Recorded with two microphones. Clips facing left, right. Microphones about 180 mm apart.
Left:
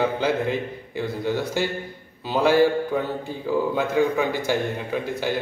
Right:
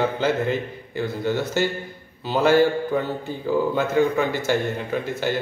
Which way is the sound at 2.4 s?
10° left (ahead or behind).